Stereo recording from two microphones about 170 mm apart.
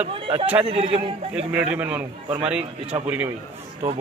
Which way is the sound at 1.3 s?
5° right (ahead or behind).